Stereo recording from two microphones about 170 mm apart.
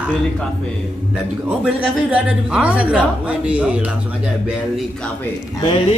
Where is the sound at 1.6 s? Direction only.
5° right (ahead or behind).